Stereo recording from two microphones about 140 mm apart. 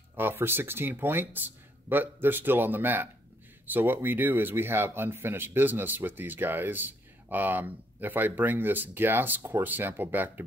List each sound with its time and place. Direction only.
0.1 s speech: 15° right (ahead or behind)